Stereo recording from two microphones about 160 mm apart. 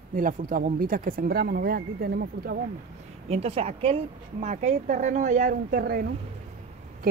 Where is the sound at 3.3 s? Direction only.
40° right (ahead or behind).